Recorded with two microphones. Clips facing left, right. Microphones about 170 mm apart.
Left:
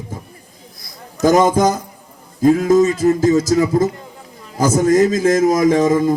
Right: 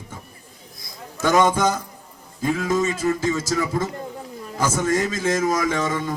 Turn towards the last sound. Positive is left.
turn(degrees=40)  # may be behind; listen again after turning